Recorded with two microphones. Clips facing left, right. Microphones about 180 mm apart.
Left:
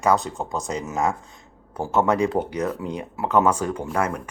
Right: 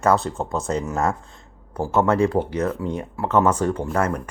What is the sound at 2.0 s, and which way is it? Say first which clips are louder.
Speech: right 2 dB; 15° left (ahead or behind).